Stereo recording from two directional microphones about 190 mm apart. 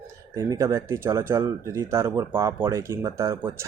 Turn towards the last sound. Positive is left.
turn(degrees=-15)  # may be behind; listen again after turning